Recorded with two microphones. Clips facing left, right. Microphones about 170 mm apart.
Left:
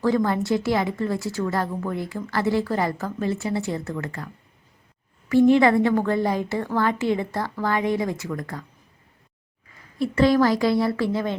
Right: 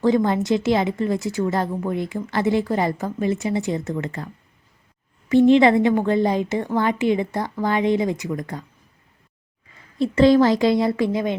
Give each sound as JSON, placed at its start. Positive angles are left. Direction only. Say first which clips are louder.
{"t": 0.0, "sound": "speech", "louder": "right 3 dB", "side_deg": -20}
{"t": 5.3, "sound": "speech", "louder": "right 2 dB", "side_deg": -20}
{"t": 10.0, "sound": "speech", "louder": "right 4 dB", "side_deg": -25}